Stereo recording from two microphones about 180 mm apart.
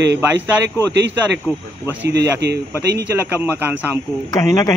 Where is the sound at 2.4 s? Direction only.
70° right (ahead or behind).